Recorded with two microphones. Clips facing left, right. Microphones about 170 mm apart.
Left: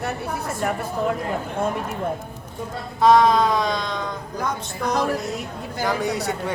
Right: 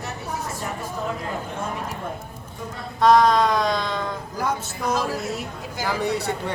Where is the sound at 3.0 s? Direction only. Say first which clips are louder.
Left 1 dB; centre (ahead or behind).